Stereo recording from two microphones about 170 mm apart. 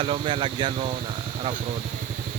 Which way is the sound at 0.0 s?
30° right (ahead or behind).